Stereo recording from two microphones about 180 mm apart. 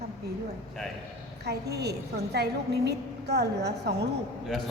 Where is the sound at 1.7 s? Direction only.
65° right (ahead or behind).